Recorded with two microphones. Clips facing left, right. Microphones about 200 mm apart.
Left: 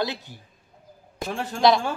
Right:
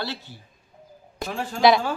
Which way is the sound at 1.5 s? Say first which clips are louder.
Right 1 dB; 5° right (ahead or behind).